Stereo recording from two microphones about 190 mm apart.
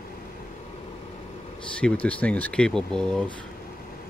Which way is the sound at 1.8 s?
5° left (ahead or behind).